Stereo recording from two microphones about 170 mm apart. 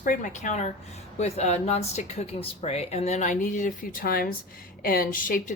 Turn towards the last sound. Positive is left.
turn(degrees=55)  # may be behind; listen again after turning